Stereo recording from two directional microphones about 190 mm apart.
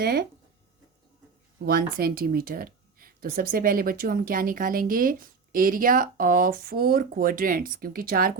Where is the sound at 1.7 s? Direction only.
50° right (ahead or behind).